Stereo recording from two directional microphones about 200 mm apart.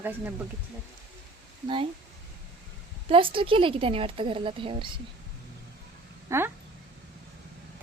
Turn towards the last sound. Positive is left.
turn(degrees=-15)  # may be behind; listen again after turning